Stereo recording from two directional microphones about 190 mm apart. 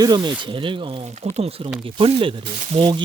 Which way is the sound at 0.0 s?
20° right (ahead or behind).